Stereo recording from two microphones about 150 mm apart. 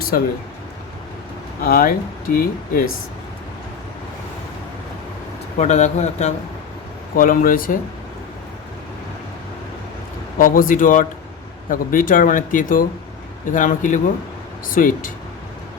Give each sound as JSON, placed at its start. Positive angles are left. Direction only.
{"t": 0.1, "sound": "speech", "side_deg": 70}
{"t": 1.6, "sound": "speech", "side_deg": 75}
{"t": 5.5, "sound": "speech", "side_deg": 50}
{"t": 7.2, "sound": "speech", "side_deg": 70}
{"t": 10.3, "sound": "speech", "side_deg": 65}